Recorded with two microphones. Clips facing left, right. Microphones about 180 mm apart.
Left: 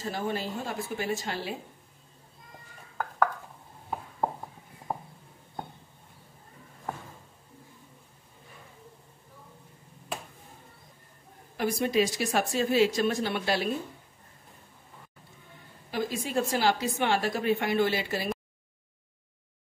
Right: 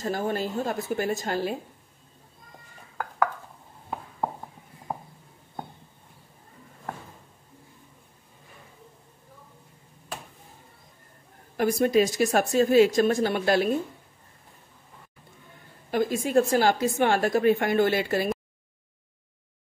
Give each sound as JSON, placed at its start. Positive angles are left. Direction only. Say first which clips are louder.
{"t": 0.0, "sound": "a woman's voice", "louder": "right 4 dB", "side_deg": -45}
{"t": 11.5, "sound": "a woman's voice", "louder": "right 5 dB", "side_deg": -50}
{"t": 15.9, "sound": "a woman's voice", "louder": "right 7 dB", "side_deg": -50}